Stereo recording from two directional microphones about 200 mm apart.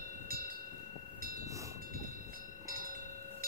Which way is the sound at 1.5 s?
15° right (ahead or behind).